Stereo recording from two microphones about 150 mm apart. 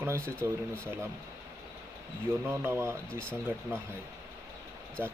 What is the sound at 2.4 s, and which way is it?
Speech, 15° right (ahead or behind).